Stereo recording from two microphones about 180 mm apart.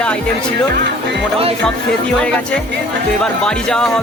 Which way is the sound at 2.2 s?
5° left (ahead or behind).